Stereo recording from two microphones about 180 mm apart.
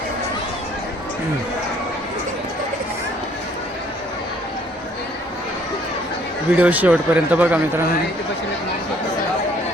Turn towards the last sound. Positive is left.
turn(degrees=-10)  # may be behind; listen again after turning